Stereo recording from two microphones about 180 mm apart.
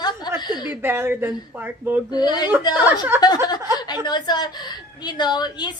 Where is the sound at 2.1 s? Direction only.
25° left (ahead or behind).